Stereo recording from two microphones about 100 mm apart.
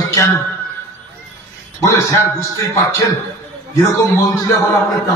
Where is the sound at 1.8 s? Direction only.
30° left (ahead or behind).